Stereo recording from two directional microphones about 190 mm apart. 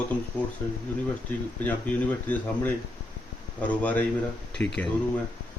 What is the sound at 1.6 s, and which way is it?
Speech, 10° left (ahead or behind).